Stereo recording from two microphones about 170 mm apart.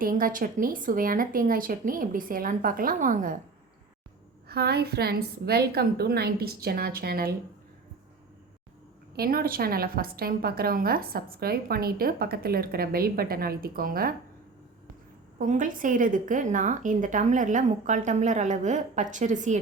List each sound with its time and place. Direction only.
0.0 s a woman's voice: 55° right (ahead or behind)
4.4 s a woman's voice: 70° right (ahead or behind)
9.1 s a woman's voice: 60° right (ahead or behind)
15.4 s a woman's voice: 50° right (ahead or behind)